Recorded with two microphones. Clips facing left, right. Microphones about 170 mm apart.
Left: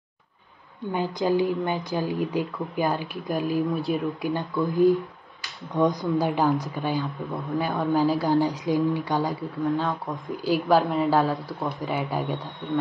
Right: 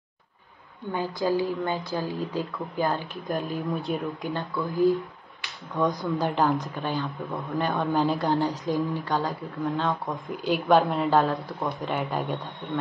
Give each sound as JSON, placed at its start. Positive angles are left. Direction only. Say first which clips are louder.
{"t": 0.9, "sound": "speech", "louder": "left 2 dB", "side_deg": 20}
{"t": 4.3, "sound": "speech", "louder": "left 5 dB", "side_deg": 20}
{"t": 8.8, "sound": "speech", "louder": "left 3 dB", "side_deg": 20}
{"t": 9.3, "sound": "speech", "louder": "left 3 dB", "side_deg": 5}